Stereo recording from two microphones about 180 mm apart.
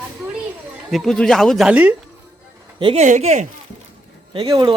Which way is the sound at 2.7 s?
25° right (ahead or behind).